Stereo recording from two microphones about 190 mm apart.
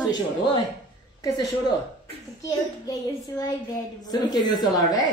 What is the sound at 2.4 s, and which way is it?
A woman's voice, 20° left (ahead or behind).